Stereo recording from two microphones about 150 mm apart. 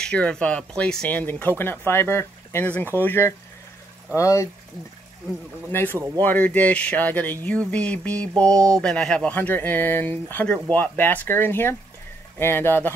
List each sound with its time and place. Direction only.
0.0 s speech: 5° left (ahead or behind)
5.9 s speech: 20° right (ahead or behind)
6.2 s speech: 10° left (ahead or behind)